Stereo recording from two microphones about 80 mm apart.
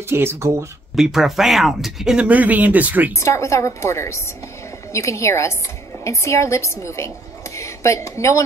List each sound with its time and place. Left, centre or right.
0.1 s speech: right
0.9 s speech: centre
2.1 s speech: centre
3.2 s a woman's voice: left